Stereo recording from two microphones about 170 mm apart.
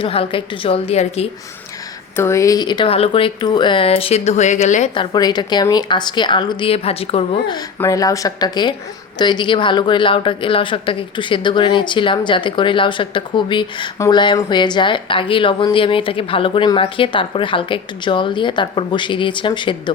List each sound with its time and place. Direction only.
0.0 s speech: 35° left (ahead or behind)
2.1 s speech: 15° left (ahead or behind); by 4.9 s 45° left (ahead or behind)
4.9 s speech: 25° left (ahead or behind)
7.8 s speech: 20° left (ahead or behind)